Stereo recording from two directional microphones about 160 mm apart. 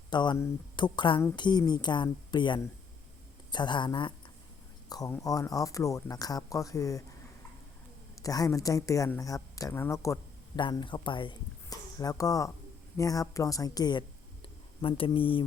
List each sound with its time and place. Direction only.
0.1 s speech: 30° left (ahead or behind)
8.2 s speech: 20° left (ahead or behind)
10.6 s speech: 30° left (ahead or behind)